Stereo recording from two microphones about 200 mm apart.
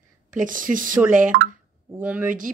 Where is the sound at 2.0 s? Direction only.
5° right (ahead or behind).